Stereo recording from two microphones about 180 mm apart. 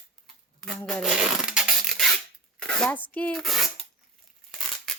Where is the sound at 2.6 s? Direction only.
5° left (ahead or behind).